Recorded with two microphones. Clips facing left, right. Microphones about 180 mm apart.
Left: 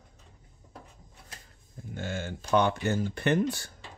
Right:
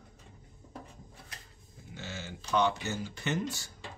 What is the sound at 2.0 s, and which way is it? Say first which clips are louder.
Speech: left 7 dB; 50° left (ahead or behind).